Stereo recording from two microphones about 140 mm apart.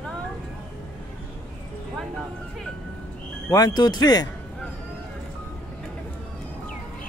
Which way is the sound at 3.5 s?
30° left (ahead or behind).